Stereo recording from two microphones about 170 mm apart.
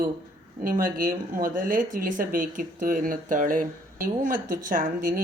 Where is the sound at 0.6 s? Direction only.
55° right (ahead or behind).